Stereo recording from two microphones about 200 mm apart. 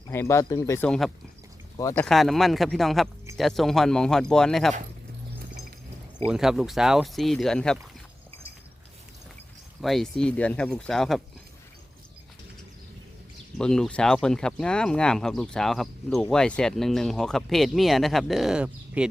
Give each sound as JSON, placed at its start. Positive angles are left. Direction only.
{"t": 0.1, "sound": "speech", "side_deg": 15}
{"t": 1.8, "sound": "speech", "side_deg": 15}
{"t": 2.0, "sound": "speech", "side_deg": 0}
{"t": 6.2, "sound": "speech", "side_deg": -5}
{"t": 9.8, "sound": "speech", "side_deg": 0}
{"t": 13.6, "sound": "speech", "side_deg": 5}